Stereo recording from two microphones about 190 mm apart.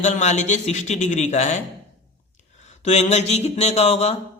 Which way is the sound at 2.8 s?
35° left (ahead or behind).